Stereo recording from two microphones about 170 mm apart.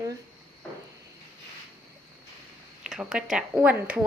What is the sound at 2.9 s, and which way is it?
Speech, 5° right (ahead or behind).